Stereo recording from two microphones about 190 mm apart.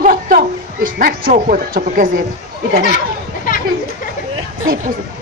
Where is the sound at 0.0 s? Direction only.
50° right (ahead or behind).